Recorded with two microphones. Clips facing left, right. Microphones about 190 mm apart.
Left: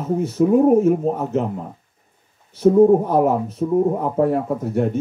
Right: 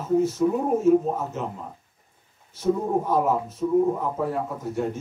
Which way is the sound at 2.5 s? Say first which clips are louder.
Left 11 dB; 60° left (ahead or behind).